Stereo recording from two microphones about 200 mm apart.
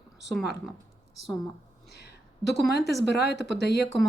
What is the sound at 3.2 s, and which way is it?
Speech, 60° left (ahead or behind).